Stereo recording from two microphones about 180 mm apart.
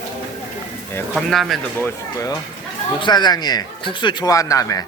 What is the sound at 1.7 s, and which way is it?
Speech, 15° left (ahead or behind).